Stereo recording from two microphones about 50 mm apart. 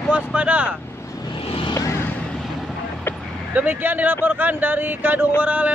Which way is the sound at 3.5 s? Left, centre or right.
Right.